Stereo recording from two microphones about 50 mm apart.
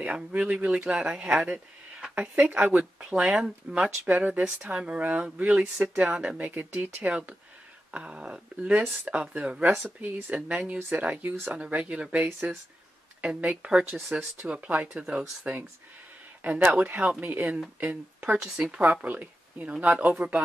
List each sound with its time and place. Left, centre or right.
0.0 s speech: right
2.1 s speech: right
2.8 s speech: centre
4.1 s speech: right
6.5 s speech: right; by 14.1 s centre
14.5 s speech: right
18.4 s speech: centre
18.8 s speech: right